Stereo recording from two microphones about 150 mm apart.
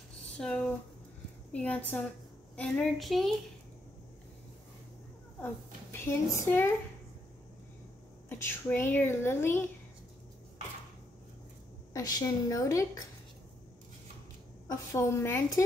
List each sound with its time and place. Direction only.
0.4 s a woman's voice: 5° left (ahead or behind)
5.4 s a woman's voice: 15° left (ahead or behind)
8.3 s a woman's voice: 15° left (ahead or behind)
11.9 s a woman's voice: 25° left (ahead or behind)
14.7 s a woman's voice: 20° left (ahead or behind)